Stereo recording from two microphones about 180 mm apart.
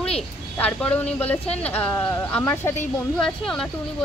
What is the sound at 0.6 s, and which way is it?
Speech, 5° left (ahead or behind).